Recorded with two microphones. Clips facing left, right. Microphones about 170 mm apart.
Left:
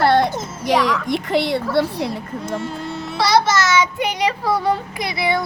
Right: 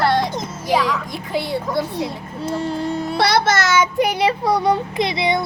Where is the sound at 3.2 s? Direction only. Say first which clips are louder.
Left 2 dB; 60° right (ahead or behind).